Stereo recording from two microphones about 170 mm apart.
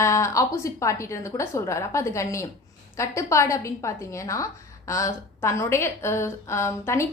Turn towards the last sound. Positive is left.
turn(degrees=15)  # may be behind; listen again after turning